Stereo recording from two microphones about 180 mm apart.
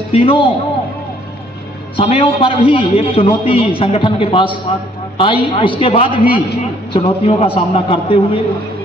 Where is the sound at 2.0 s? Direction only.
30° left (ahead or behind).